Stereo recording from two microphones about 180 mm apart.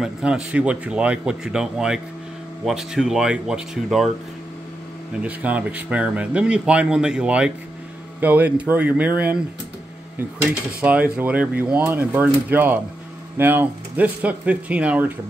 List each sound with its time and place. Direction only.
0.0 s speech: 5° right (ahead or behind)
5.2 s speech: 10° right (ahead or behind)
10.8 s speech: 10° right (ahead or behind)